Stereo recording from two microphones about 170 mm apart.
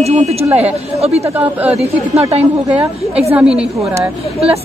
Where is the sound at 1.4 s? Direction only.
10° right (ahead or behind).